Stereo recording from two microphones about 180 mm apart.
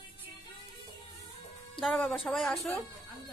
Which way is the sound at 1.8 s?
5° left (ahead or behind).